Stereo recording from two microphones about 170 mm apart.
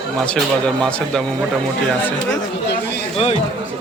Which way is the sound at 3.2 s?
35° left (ahead or behind).